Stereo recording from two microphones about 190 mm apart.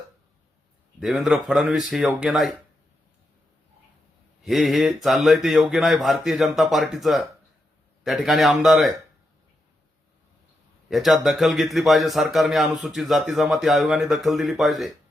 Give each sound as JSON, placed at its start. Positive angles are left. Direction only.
{"t": 0.9, "sound": "a man's voice", "side_deg": 0}
{"t": 4.4, "sound": "a man's voice", "side_deg": 0}
{"t": 10.8, "sound": "a man's voice", "side_deg": 0}